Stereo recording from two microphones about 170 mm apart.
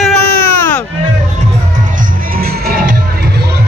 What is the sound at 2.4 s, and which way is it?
Crowd, 60° right (ahead or behind).